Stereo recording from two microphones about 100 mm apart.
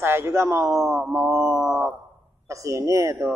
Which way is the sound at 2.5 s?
30° right (ahead or behind).